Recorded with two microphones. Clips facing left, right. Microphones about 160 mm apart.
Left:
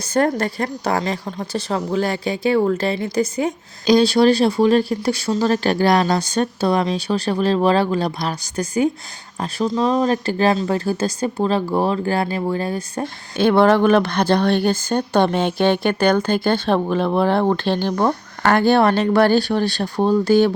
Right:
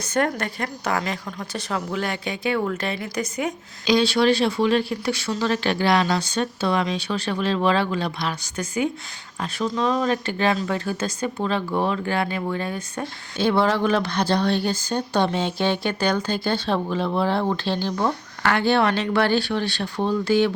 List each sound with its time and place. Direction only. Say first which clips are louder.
0.0 s a woman's voice: left 5 dB; 35° left (ahead or behind)
13.3 s speech: left 6 dB; 55° left (ahead or behind)